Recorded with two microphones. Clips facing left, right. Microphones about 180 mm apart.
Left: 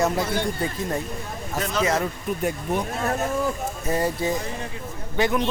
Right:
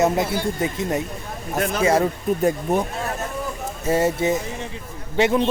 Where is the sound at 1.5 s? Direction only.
55° right (ahead or behind).